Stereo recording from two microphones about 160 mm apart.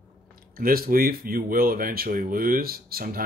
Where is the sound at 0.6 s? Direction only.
65° right (ahead or behind).